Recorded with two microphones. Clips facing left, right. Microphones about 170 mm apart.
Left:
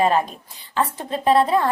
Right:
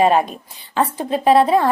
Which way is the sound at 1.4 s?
30° right (ahead or behind).